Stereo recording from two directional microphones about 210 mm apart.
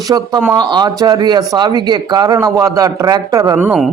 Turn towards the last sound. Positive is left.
turn(degrees=0)  # may be behind; listen again after turning